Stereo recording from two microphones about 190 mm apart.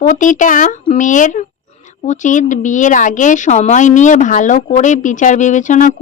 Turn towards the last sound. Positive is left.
turn(degrees=40)  # may be behind; listen again after turning